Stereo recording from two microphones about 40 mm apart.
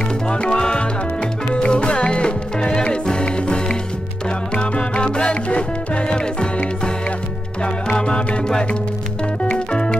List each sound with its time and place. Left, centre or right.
0.3 s music: left
7.6 s music: left
9.7 s music: left